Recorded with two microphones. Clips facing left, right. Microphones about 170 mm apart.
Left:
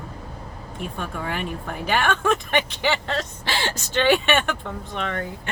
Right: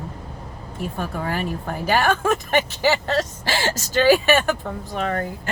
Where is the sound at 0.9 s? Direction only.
40° right (ahead or behind).